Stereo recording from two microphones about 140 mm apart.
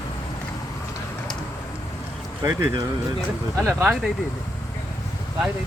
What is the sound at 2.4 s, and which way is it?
Speech, 25° right (ahead or behind).